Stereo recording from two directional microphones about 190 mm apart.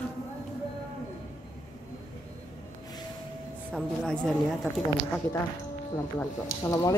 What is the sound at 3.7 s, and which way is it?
A woman's voice, centre (ahead or behind).